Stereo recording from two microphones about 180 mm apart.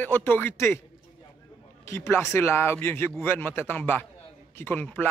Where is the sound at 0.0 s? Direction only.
10° left (ahead or behind).